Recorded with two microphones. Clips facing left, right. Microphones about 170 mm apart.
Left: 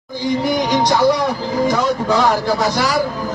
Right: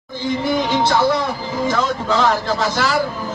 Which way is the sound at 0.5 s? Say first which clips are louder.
Even; 15° left (ahead or behind).